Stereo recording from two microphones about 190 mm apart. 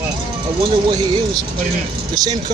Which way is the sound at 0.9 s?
25° right (ahead or behind).